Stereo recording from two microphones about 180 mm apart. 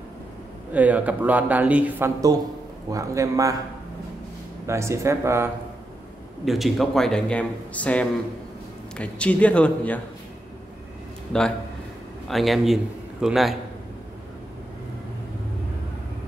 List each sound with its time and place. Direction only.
0.7 s a man's voice: 10° right (ahead or behind)
4.6 s speech: 15° right (ahead or behind)
6.4 s a man's voice: centre (ahead or behind)
12.3 s a man's voice: centre (ahead or behind)